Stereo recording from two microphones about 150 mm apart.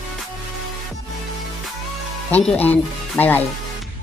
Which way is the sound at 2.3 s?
10° left (ahead or behind).